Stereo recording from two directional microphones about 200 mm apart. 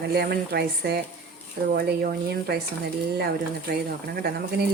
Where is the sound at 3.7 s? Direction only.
50° right (ahead or behind).